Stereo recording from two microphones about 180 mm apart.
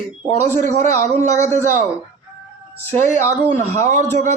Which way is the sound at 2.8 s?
10° left (ahead or behind).